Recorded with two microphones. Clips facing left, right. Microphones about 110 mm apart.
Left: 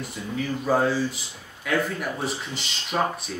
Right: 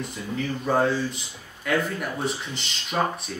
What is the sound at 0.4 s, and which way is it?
Speech, 5° left (ahead or behind).